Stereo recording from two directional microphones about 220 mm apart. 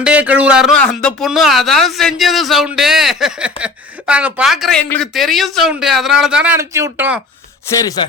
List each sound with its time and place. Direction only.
0.0 s speech: 5° right (ahead or behind)
7.8 s music: 15° left (ahead or behind)